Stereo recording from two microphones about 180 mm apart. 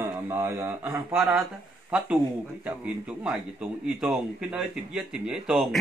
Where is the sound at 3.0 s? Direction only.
5° right (ahead or behind).